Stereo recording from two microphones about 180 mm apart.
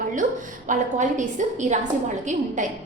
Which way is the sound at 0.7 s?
45° right (ahead or behind).